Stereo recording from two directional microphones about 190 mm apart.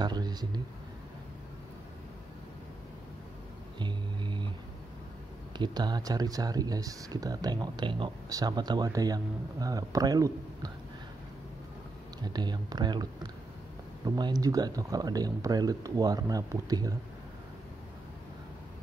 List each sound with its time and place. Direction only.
0.0 s speech: 20° right (ahead or behind)
3.8 s music: 25° right (ahead or behind)
5.6 s speech: 20° right (ahead or behind)
12.2 s speech: 20° right (ahead or behind)